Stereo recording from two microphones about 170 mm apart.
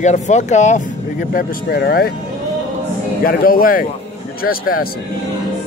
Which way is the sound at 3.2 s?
60° left (ahead or behind).